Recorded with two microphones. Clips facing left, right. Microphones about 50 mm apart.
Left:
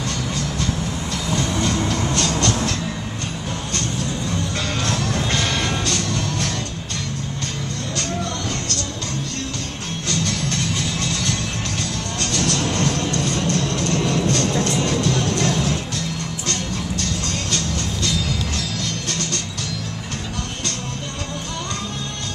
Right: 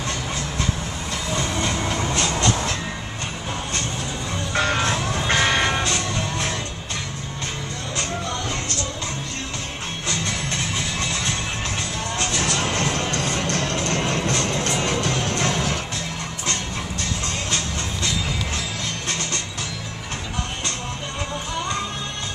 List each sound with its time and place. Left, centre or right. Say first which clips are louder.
1.3 s train: left 3 dB; right
4.6 s music: right 7 dB; right
7.9 s music: even; centre
10.0 s music: left 3 dB; centre
17.0 s music: left 2 dB; right